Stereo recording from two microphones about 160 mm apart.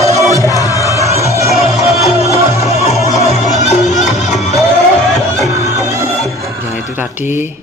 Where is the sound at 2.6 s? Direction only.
40° left (ahead or behind).